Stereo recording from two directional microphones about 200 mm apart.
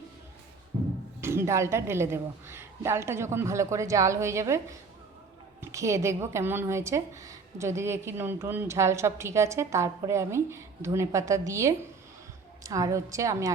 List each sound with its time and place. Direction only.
1.2 s a woman's voice: 10° right (ahead or behind)